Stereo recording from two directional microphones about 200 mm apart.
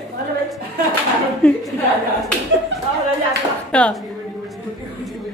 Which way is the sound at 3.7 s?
5° left (ahead or behind).